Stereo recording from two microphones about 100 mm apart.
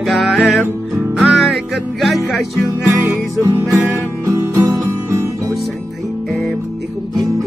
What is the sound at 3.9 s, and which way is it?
Music, 30° right (ahead or behind).